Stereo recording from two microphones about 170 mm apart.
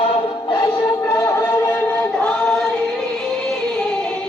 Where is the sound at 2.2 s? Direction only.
5° left (ahead or behind).